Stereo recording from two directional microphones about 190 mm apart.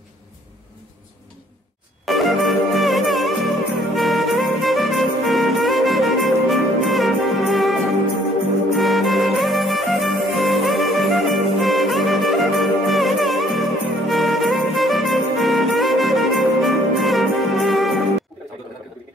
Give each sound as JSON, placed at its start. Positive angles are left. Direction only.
{"t": 2.0, "sound": "music", "side_deg": 0}
{"t": 8.7, "sound": "music", "side_deg": 0}